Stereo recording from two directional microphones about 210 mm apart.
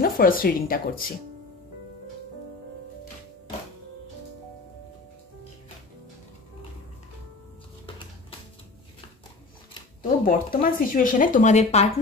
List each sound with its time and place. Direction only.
0.0 s speech: 45° left (ahead or behind)
10.2 s speech: 40° left (ahead or behind)